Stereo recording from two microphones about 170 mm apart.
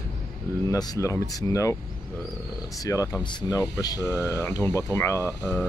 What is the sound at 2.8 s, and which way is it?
Speech, 20° left (ahead or behind).